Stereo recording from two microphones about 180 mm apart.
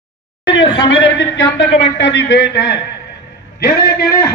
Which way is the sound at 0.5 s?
90° left.